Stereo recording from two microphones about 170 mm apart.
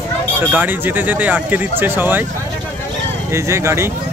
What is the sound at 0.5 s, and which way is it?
Speech, 10° right (ahead or behind).